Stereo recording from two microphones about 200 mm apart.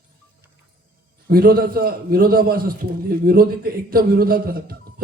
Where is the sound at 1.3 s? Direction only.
45° right (ahead or behind).